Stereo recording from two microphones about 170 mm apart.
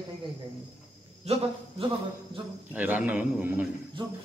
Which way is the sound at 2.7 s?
10° right (ahead or behind).